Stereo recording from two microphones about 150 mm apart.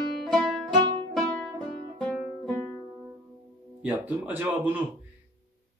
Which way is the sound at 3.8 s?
10° right (ahead or behind).